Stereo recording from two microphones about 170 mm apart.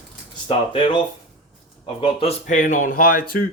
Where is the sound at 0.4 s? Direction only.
30° left (ahead or behind).